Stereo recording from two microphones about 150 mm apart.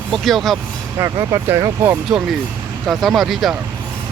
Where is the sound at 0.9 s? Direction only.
20° right (ahead or behind).